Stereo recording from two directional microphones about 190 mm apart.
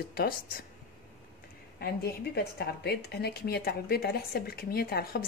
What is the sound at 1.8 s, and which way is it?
A woman's voice, 55° left (ahead or behind).